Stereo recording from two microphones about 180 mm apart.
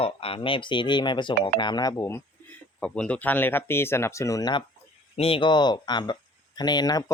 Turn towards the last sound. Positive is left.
turn(degrees=20)  # may be behind; listen again after turning